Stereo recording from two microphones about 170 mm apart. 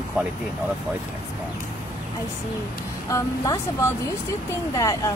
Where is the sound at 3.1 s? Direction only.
20° left (ahead or behind).